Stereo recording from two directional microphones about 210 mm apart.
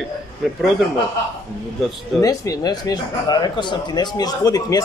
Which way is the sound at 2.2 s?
15° left (ahead or behind).